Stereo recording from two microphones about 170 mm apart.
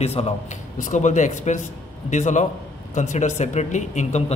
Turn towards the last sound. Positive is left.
turn(degrees=45)  # may be behind; listen again after turning